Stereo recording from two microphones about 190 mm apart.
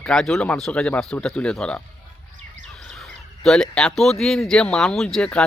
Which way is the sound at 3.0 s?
Centre (ahead or behind).